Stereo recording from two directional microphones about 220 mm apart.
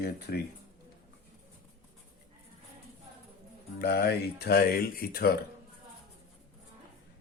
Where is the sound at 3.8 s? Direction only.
45° left (ahead or behind).